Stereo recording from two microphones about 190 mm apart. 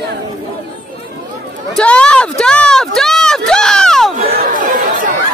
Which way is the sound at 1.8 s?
5° left (ahead or behind).